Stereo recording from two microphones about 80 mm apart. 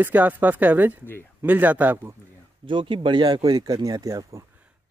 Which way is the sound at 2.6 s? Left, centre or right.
Right.